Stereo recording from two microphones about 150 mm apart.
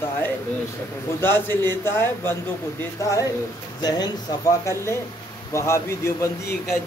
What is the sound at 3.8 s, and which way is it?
A man's voice, 25° left (ahead or behind).